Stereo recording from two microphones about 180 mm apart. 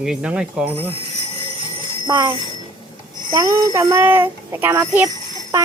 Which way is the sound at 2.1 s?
25° right (ahead or behind).